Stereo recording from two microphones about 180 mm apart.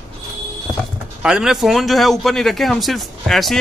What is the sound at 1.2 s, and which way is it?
A man's voice, 5° right (ahead or behind).